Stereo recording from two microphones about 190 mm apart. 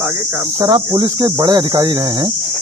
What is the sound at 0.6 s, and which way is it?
Speech, 20° right (ahead or behind).